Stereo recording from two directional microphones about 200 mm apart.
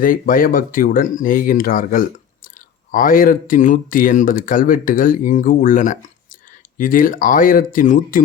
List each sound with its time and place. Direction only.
0.0 s speech: 45° left (ahead or behind)